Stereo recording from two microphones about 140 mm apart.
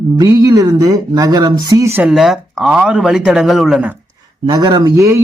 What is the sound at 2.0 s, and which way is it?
Speech, centre (ahead or behind).